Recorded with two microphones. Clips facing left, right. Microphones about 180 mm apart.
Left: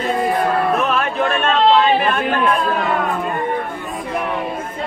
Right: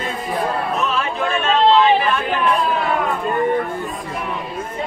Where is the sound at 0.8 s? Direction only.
60° left (ahead or behind).